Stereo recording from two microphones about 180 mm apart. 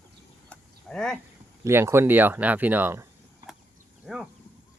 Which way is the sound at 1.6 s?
15° right (ahead or behind).